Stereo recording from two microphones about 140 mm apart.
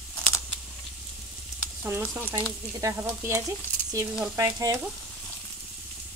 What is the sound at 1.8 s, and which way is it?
Speech, 15° right (ahead or behind).